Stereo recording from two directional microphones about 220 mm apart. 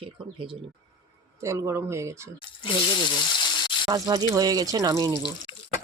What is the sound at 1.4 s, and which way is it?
Speech, 15° right (ahead or behind).